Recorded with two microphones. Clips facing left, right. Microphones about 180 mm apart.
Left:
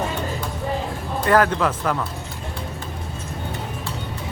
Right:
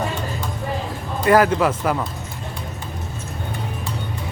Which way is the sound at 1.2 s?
10° right (ahead or behind).